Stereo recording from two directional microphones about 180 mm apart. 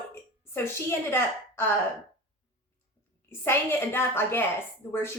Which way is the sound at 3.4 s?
10° left (ahead or behind).